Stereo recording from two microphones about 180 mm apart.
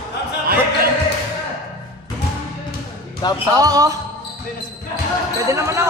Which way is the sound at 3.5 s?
20° right (ahead or behind).